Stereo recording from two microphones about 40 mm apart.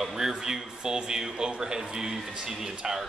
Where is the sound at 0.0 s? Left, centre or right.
Centre.